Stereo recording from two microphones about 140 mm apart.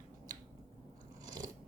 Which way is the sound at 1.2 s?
25° right (ahead or behind).